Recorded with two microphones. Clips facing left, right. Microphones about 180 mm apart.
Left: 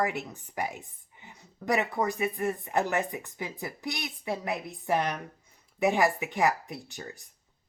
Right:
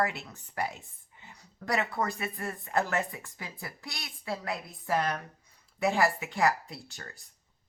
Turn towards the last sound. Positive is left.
turn(degrees=15)  # may be behind; listen again after turning